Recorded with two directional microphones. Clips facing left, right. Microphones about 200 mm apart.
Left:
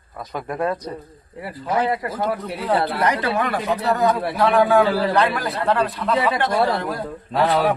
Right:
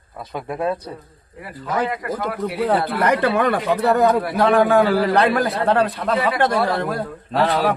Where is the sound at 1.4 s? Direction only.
30° left (ahead or behind).